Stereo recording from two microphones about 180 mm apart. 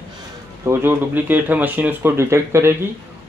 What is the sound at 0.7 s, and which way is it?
Speech, 10° right (ahead or behind).